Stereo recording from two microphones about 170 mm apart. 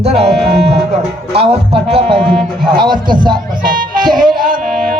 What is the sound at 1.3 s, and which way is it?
Music, 35° right (ahead or behind).